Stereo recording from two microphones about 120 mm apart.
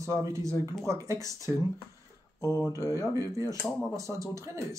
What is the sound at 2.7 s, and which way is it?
Speech, 25° right (ahead or behind).